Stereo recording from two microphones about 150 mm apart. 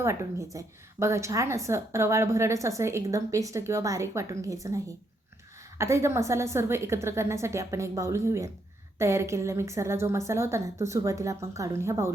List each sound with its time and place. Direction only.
0.0 s a woman's voice: 20° right (ahead or behind)